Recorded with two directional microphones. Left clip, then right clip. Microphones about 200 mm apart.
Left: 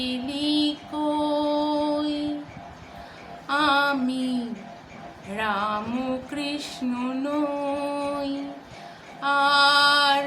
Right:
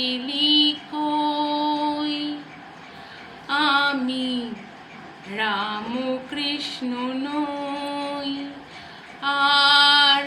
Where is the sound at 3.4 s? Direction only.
25° left (ahead or behind).